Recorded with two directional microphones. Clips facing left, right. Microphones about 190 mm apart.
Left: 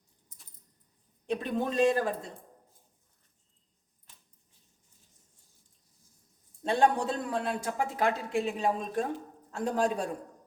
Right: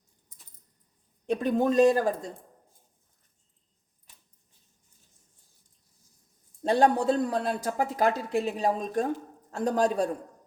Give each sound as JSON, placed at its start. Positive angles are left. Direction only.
{"t": 1.3, "sound": "speech", "side_deg": -45}
{"t": 6.6, "sound": "speech", "side_deg": -40}